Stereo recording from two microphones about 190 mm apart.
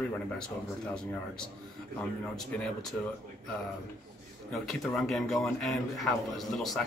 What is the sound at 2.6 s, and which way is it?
Speech, centre (ahead or behind).